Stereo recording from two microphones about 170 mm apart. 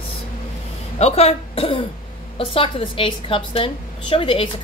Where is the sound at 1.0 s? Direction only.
35° left (ahead or behind).